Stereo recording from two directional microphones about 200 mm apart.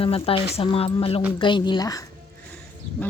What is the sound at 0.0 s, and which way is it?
A woman's voice, 30° left (ahead or behind).